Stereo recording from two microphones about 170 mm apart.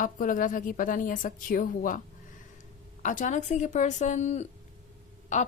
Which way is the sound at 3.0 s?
45° left (ahead or behind).